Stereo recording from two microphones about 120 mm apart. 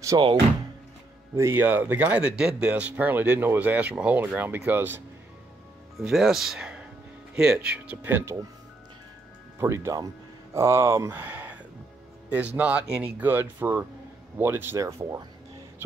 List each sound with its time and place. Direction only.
0.1 s speech: 30° right (ahead or behind)
1.3 s speech: 20° right (ahead or behind)
5.9 s speech: 5° right (ahead or behind)
9.6 s speech: 25° right (ahead or behind)